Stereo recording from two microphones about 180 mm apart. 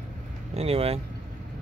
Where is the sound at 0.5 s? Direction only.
35° right (ahead or behind).